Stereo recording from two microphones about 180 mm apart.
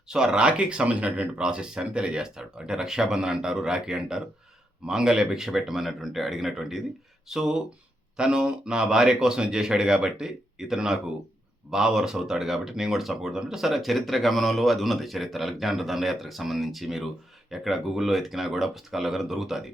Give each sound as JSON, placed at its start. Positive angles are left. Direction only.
{"t": 0.1, "sound": "speech", "side_deg": -5}